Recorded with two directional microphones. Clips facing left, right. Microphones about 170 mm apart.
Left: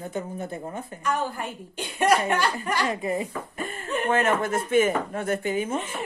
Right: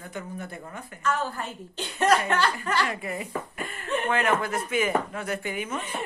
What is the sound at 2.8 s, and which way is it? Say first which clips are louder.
Speech: left 4 dB; 30° left (ahead or behind).